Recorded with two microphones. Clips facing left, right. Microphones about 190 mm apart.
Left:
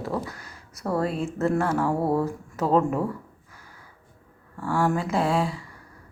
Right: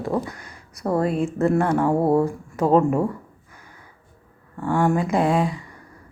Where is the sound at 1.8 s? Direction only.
20° right (ahead or behind).